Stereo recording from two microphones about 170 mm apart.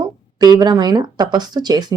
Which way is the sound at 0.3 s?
20° right (ahead or behind).